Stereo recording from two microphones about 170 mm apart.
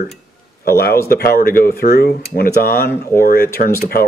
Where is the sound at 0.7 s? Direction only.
65° left (ahead or behind).